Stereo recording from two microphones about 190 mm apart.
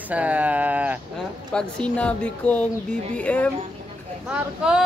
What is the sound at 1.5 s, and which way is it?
Speech, 5° left (ahead or behind).